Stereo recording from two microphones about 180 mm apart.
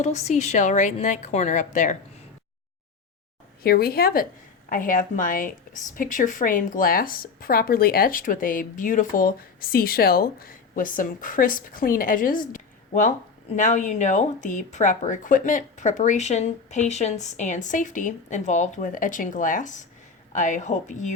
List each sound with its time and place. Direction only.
0.0 s a woman's voice: 40° left (ahead or behind)
3.6 s speech: 55° left (ahead or behind)